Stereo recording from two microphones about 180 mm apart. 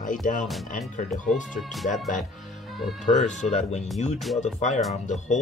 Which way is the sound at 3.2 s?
40° left (ahead or behind).